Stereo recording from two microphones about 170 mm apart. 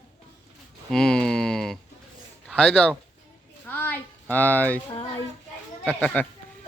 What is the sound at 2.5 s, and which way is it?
Speech, 5° left (ahead or behind).